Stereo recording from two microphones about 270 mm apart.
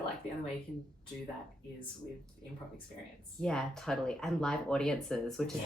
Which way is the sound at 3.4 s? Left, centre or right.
Centre.